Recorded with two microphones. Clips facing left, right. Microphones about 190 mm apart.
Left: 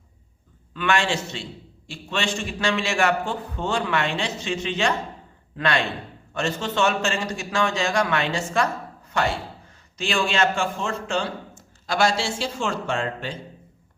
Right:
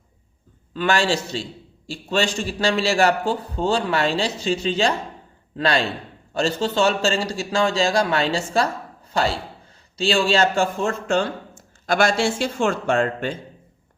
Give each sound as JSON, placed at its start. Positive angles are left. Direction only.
{"t": 0.7, "sound": "a man's voice", "side_deg": -35}